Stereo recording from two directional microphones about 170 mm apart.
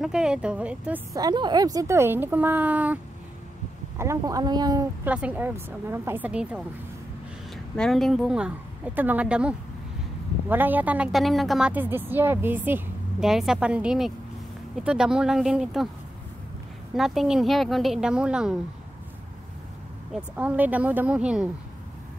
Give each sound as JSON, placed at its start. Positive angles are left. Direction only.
{"t": 0.0, "sound": "speech", "side_deg": -5}
{"t": 1.1, "sound": "a woman's voice", "side_deg": -25}
{"t": 4.0, "sound": "a woman's voice", "side_deg": -20}
{"t": 5.0, "sound": "a woman's voice", "side_deg": -10}
{"t": 7.7, "sound": "a woman's voice", "side_deg": 5}
{"t": 16.9, "sound": "speech", "side_deg": 0}
{"t": 20.1, "sound": "a woman's voice", "side_deg": -5}